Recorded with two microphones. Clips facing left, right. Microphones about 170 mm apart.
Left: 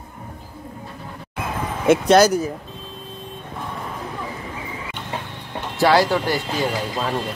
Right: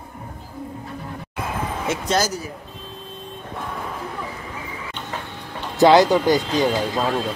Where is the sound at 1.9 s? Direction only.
65° left (ahead or behind).